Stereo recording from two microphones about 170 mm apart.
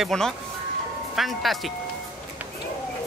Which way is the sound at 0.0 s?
5° left (ahead or behind).